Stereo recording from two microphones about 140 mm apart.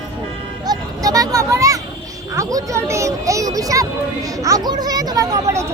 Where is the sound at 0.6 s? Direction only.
25° right (ahead or behind).